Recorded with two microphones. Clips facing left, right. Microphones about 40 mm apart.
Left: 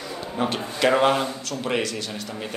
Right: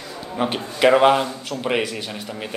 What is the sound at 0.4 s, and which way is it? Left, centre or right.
A man's voice, centre.